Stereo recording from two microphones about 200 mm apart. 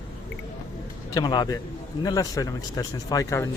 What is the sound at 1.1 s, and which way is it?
A man's voice, 20° left (ahead or behind).